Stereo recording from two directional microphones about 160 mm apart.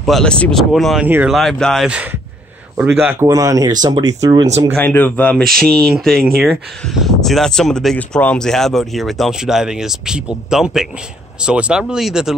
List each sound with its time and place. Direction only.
0.0 s speech: 5° left (ahead or behind)
1.0 s speech: 10° right (ahead or behind)
1.3 s speech: centre (ahead or behind)
2.8 s speech: 10° right (ahead or behind)
3.3 s speech: 20° right (ahead or behind)
4.7 s speech: 10° left (ahead or behind)
5.7 s speech: 70° right (ahead or behind)
5.9 s speech: centre (ahead or behind)